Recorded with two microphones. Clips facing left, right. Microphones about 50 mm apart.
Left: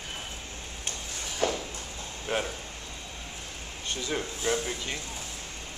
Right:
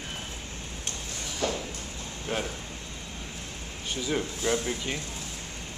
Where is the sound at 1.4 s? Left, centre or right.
Left.